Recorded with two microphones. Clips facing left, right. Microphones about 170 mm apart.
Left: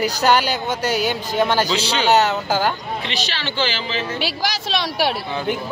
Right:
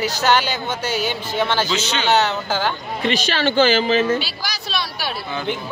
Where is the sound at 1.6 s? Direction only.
35° left (ahead or behind).